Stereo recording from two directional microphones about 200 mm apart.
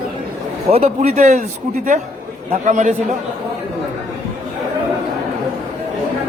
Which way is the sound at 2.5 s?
35° right (ahead or behind).